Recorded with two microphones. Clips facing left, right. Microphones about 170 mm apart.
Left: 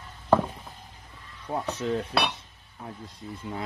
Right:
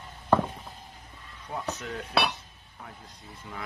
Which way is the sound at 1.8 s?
30° left (ahead or behind).